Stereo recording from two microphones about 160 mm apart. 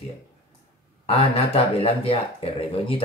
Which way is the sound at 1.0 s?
40° left (ahead or behind).